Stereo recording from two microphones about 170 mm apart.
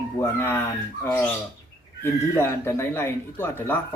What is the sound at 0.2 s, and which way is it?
Speech, 15° left (ahead or behind).